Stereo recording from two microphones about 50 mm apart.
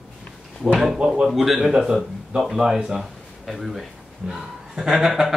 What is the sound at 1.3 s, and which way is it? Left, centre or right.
Speech, centre.